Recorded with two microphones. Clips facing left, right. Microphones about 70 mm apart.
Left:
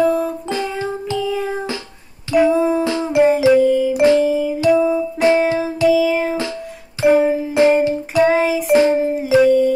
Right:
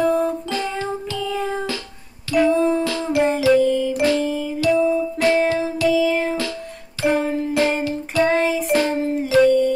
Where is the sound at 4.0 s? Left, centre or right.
Left.